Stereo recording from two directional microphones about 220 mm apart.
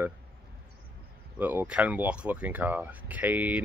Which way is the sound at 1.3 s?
5° right (ahead or behind).